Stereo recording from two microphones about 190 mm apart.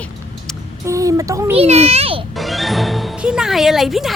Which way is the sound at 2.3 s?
Centre (ahead or behind).